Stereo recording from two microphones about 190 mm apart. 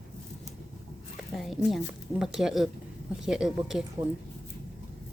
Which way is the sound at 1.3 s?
Centre (ahead or behind).